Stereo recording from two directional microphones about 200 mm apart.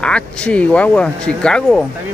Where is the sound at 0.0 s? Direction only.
5° left (ahead or behind).